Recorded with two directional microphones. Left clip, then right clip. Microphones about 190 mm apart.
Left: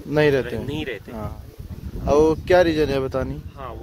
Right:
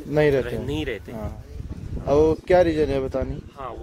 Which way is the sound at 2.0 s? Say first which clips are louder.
Left 1 dB; 15° left (ahead or behind).